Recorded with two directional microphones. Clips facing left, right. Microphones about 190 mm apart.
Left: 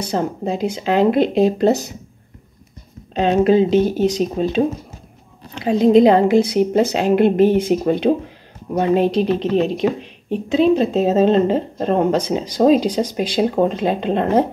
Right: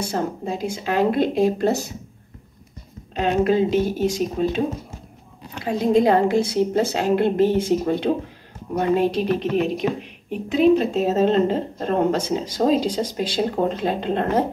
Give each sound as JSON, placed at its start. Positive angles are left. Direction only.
{"t": 0.0, "sound": "a woman's voice", "side_deg": 20}
{"t": 3.2, "sound": "a woman's voice", "side_deg": 20}